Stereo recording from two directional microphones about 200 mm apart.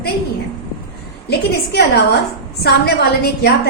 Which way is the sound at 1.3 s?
55° left (ahead or behind).